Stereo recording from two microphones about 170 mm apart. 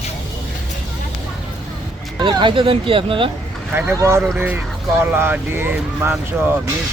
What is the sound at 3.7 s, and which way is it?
Speech, 15° right (ahead or behind).